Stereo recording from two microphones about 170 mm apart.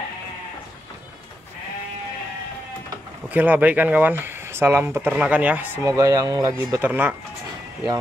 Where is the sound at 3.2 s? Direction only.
10° right (ahead or behind).